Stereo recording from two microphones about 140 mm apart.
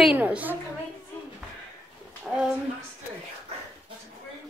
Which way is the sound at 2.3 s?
5° right (ahead or behind).